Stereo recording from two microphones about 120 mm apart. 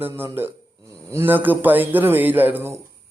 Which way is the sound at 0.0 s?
20° right (ahead or behind).